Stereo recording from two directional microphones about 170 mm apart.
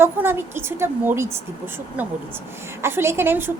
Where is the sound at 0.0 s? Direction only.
15° right (ahead or behind).